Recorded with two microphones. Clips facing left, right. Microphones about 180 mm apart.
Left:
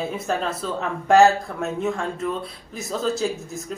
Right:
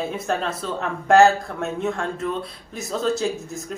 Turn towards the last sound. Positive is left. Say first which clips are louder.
# right 1 dB
turn(degrees=0)  # may be behind; listen again after turning